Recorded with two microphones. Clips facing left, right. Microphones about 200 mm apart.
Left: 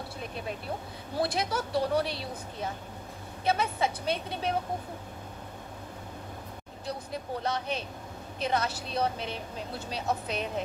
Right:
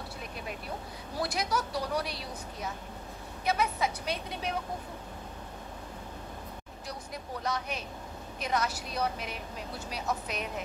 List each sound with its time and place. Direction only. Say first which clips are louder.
1.1 s speech: left 2 dB; 25° left (ahead or behind)
6.9 s speech: left 5 dB; 30° left (ahead or behind)